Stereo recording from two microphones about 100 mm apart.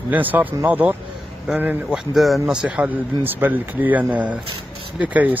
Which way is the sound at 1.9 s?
Centre (ahead or behind).